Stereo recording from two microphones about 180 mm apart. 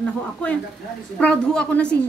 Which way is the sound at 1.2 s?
5° left (ahead or behind).